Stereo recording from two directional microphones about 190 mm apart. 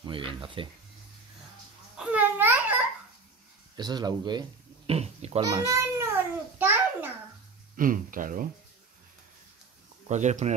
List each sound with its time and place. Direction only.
0.0 s speech: 25° right (ahead or behind)
2.0 s babbling: 5° right (ahead or behind)
3.7 s speech: 20° right (ahead or behind)
5.8 s a sound: 15° right (ahead or behind)
7.7 s speech: 45° right (ahead or behind)
10.0 s speech: 40° right (ahead or behind)